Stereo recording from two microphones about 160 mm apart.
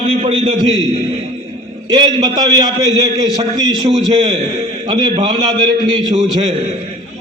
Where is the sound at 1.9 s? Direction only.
25° right (ahead or behind).